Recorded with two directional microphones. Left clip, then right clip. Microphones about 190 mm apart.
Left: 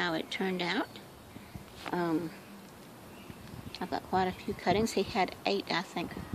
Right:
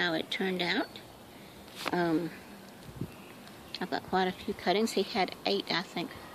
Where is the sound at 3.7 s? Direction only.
5° right (ahead or behind).